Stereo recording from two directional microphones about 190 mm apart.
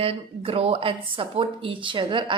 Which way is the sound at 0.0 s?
30° right (ahead or behind).